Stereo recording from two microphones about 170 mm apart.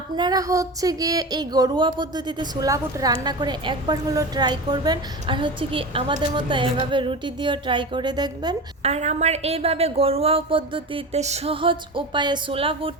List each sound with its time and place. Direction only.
0.2 s speech: 20° right (ahead or behind)
8.8 s a woman's voice: 40° right (ahead or behind)